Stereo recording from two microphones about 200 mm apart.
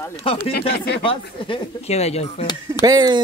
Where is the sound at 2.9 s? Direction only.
20° right (ahead or behind).